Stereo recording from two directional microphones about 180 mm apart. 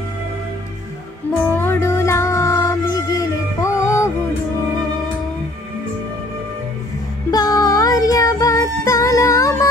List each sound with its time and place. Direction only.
1.5 s music: 10° left (ahead or behind)
7.2 s music: 20° left (ahead or behind)